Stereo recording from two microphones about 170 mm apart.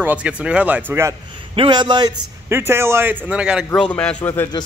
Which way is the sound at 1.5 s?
30° right (ahead or behind).